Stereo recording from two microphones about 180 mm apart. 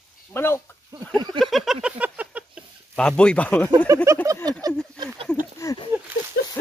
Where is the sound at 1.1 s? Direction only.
25° right (ahead or behind).